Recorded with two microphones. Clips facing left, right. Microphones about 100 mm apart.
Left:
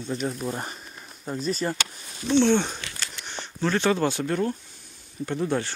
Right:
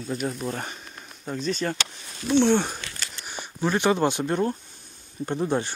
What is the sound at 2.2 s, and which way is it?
Speech, 10° right (ahead or behind).